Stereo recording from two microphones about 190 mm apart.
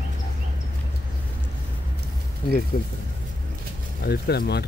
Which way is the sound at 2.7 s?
50° left (ahead or behind).